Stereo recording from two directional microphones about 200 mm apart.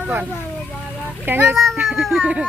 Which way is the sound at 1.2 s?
10° right (ahead or behind).